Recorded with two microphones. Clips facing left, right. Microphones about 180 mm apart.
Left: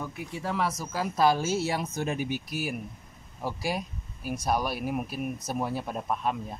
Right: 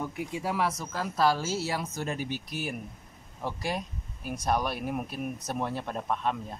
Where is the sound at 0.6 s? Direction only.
Centre (ahead or behind).